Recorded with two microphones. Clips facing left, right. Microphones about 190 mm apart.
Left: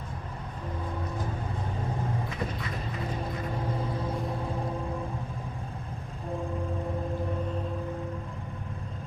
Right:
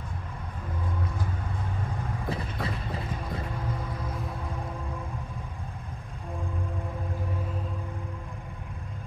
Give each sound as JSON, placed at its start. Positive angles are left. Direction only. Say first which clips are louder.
{"t": 2.2, "sound": "vehicle", "louder": "right 2 dB", "side_deg": -35}